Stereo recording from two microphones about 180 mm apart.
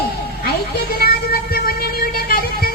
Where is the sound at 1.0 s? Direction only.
55° left (ahead or behind).